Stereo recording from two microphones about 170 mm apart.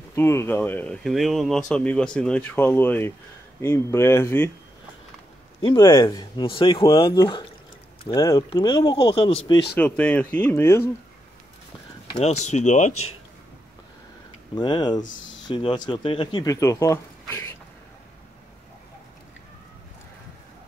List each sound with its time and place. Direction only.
0.1 s speech: 15° left (ahead or behind)
5.6 s speech: 30° left (ahead or behind)
9.8 s speech: 10° left (ahead or behind)
12.2 s speech: 40° left (ahead or behind)
14.5 s speech: 25° left (ahead or behind)